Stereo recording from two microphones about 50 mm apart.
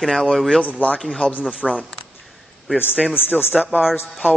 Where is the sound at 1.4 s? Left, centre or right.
Centre.